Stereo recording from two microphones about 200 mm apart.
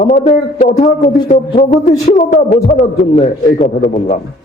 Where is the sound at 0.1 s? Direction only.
35° left (ahead or behind).